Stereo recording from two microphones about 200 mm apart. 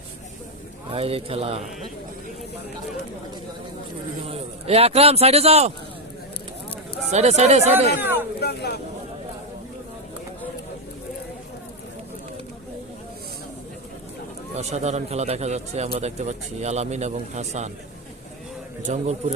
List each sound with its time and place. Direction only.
0.9 s speech: 30° right (ahead or behind)
4.3 s a man's voice: 30° right (ahead or behind)
7.1 s a man's voice: 35° right (ahead or behind)
7.9 s speech: 10° right (ahead or behind)
8.4 s speech: 55° left (ahead or behind)
14.5 s a man's voice: 35° right (ahead or behind)
18.9 s a man's voice: 35° right (ahead or behind)